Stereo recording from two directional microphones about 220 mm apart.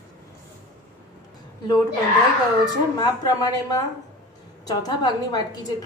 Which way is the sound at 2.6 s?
20° left (ahead or behind).